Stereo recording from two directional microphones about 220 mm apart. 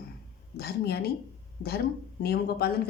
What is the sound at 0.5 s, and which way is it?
Speech, 45° left (ahead or behind).